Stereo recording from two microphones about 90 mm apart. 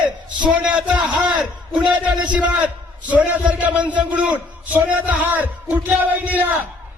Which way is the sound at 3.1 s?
15° right (ahead or behind).